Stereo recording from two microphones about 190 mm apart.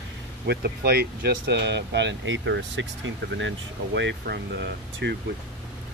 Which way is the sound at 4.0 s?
65° right (ahead or behind).